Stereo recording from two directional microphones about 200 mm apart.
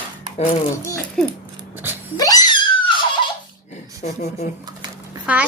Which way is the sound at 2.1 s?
20° left (ahead or behind).